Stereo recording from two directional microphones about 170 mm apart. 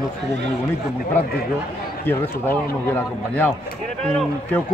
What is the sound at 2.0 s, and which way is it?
A man's voice, 10° left (ahead or behind).